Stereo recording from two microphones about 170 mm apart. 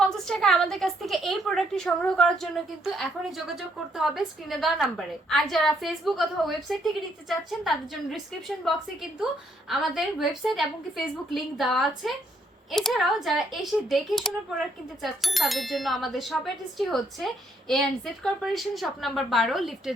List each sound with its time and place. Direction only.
0.0 s a woman's voice: 5° left (ahead or behind)